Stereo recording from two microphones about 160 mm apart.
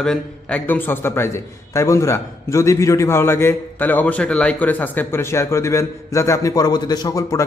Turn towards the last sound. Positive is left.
turn(degrees=20)  # may be behind; listen again after turning